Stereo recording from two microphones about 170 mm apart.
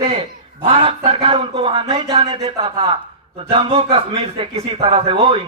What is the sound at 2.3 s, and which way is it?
A man's voice, 35° right (ahead or behind).